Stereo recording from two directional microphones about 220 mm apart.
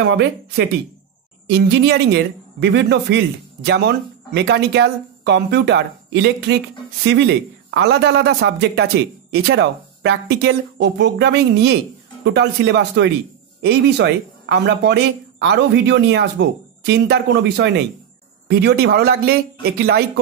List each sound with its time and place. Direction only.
0.1 s speech: 50° right (ahead or behind)
7.7 s speech: 50° right (ahead or behind)